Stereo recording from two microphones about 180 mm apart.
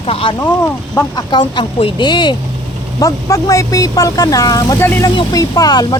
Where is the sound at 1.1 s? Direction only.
25° left (ahead or behind).